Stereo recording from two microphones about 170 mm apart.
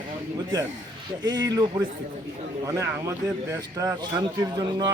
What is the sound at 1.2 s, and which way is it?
A man's voice, 20° right (ahead or behind).